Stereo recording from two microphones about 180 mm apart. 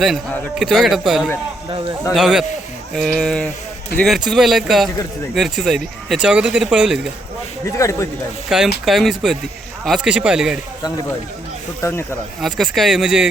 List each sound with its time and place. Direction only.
0.6 s speech: centre (ahead or behind)
7.6 s speech: 15° left (ahead or behind)
8.4 s speech: 5° right (ahead or behind)
11.8 s speech: 15° left (ahead or behind)
12.4 s speech: centre (ahead or behind)